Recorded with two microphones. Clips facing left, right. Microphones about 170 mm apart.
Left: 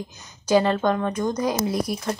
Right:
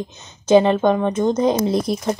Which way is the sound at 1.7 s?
10° left (ahead or behind).